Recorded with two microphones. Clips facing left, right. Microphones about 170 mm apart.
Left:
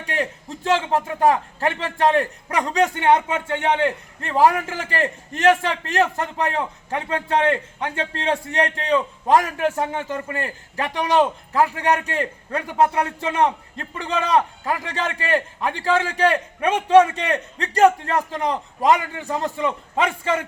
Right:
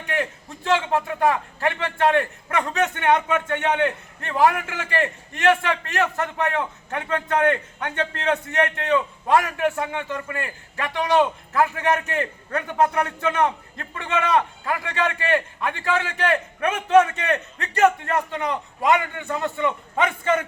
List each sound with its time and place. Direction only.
0.0 s a man's voice: 35° left (ahead or behind)